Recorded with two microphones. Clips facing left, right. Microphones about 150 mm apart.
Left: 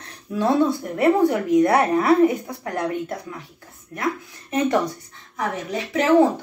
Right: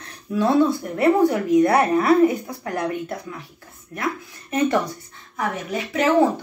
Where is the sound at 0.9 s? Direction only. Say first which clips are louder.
Even; 20° left (ahead or behind).